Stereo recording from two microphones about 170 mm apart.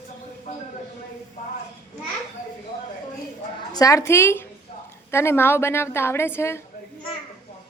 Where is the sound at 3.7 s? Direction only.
20° left (ahead or behind).